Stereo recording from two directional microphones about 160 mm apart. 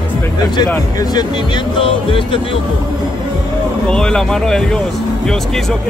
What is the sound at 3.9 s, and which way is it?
Speech, 5° left (ahead or behind).